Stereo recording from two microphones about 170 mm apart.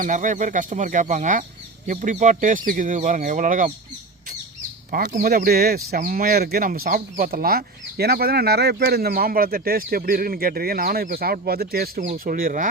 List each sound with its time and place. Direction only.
0.0 s speech: 50° right (ahead or behind)
4.9 s speech: 55° right (ahead or behind)